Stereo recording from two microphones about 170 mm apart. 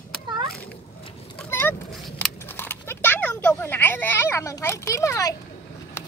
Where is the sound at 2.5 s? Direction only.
15° left (ahead or behind).